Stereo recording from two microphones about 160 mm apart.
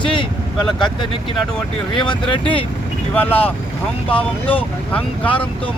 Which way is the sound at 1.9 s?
30° left (ahead or behind).